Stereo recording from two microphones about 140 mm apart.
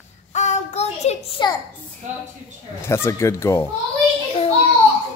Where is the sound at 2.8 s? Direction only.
20° left (ahead or behind).